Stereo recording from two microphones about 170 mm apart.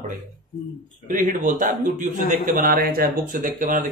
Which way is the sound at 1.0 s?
50° right (ahead or behind).